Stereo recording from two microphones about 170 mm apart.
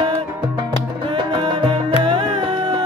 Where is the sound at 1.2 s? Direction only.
25° right (ahead or behind).